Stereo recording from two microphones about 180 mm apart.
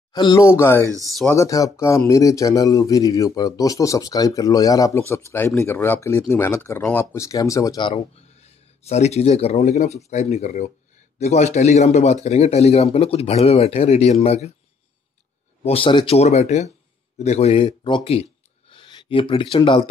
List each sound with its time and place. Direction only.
0.1 s speech: 20° left (ahead or behind)
1.0 s speech: centre (ahead or behind)
1.3 s speech: 15° left (ahead or behind)
7.9 s a man's voice: 35° left (ahead or behind)
15.6 s a man's voice: 30° left (ahead or behind)
18.7 s a sound: 30° left (ahead or behind)
19.5 s speech: 25° left (ahead or behind)